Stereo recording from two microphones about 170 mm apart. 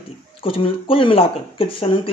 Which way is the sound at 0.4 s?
30° left (ahead or behind).